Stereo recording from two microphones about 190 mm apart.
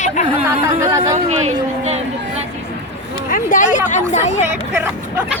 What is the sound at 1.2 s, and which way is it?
Speech, 35° right (ahead or behind).